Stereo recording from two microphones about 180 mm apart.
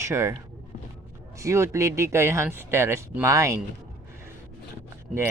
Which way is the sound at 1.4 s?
15° right (ahead or behind).